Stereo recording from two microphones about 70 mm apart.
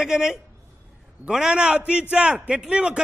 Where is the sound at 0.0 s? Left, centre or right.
Centre.